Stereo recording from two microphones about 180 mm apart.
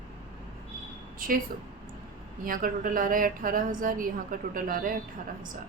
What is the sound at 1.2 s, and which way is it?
Speech, 50° right (ahead or behind).